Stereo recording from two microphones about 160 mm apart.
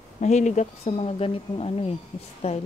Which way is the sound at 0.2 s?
45° left (ahead or behind).